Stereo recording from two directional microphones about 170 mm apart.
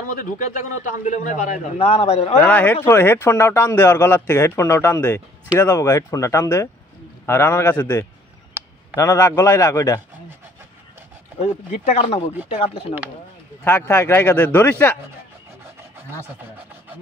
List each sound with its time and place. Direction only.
0.2 s a man's voice: 50° left (ahead or behind)
2.4 s a man's voice: 10° left (ahead or behind)
11.4 s speech: 40° left (ahead or behind)
13.7 s a man's voice: 10° left (ahead or behind)